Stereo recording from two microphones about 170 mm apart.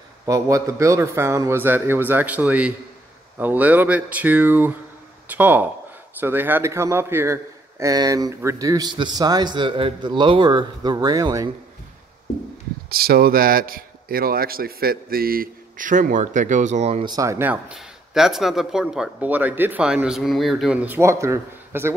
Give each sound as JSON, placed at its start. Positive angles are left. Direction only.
{"t": 0.3, "sound": "a man's voice", "side_deg": -20}
{"t": 12.9, "sound": "speech", "side_deg": -65}
{"t": 17.0, "sound": "speech", "side_deg": -20}